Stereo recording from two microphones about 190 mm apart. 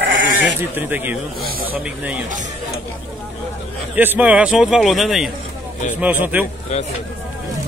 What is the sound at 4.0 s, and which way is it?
A man's voice, 10° right (ahead or behind).